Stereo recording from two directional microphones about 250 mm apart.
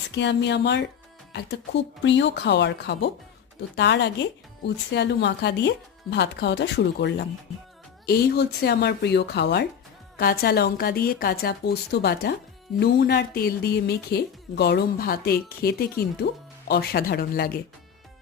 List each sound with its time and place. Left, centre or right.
0.1 s a woman's voice: left